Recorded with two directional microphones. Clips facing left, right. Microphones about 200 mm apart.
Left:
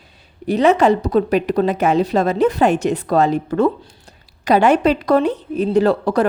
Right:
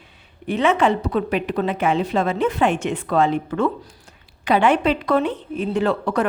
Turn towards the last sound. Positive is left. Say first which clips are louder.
# left 5 dB
turn(degrees=35)  # may be behind; listen again after turning